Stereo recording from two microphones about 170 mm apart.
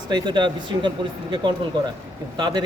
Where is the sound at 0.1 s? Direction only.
25° right (ahead or behind).